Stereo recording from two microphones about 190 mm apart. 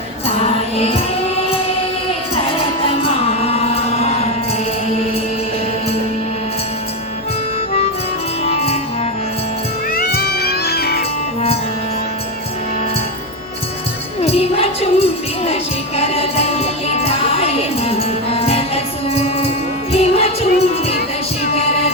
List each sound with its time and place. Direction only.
0.3 s music: 35° left (ahead or behind)
2.8 s music: 30° left (ahead or behind)
8.4 s music: 35° left (ahead or behind)
9.9 s music: 55° left (ahead or behind)
14.2 s music: 35° left (ahead or behind)